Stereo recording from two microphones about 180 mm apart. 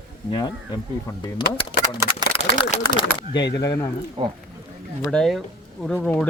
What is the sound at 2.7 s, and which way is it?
Speech, 40° left (ahead or behind).